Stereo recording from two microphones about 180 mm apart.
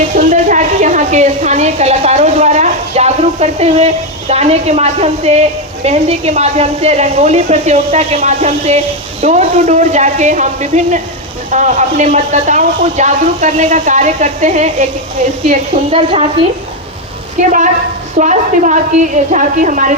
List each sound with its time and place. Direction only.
0.2 s a woman's voice: 45° right (ahead or behind)
17.4 s speech: 40° right (ahead or behind)